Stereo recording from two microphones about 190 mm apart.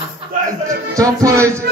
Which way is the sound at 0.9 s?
15° right (ahead or behind).